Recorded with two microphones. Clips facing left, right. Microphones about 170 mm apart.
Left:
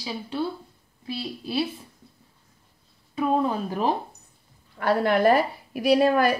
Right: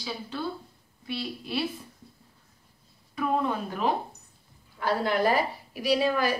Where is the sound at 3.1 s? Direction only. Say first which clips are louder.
Left 4 dB; 25° left (ahead or behind).